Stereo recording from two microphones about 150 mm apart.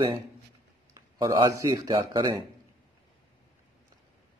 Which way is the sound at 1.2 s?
25° right (ahead or behind).